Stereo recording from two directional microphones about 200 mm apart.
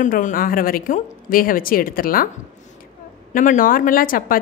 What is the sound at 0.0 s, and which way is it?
A woman's voice, 40° left (ahead or behind).